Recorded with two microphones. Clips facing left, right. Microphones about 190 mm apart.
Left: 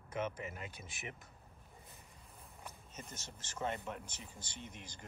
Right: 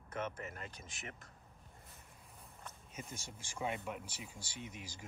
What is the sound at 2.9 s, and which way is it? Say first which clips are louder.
Speech: right 4 dB; 10° right (ahead or behind).